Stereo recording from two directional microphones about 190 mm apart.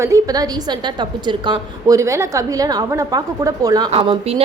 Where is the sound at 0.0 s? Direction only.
15° right (ahead or behind).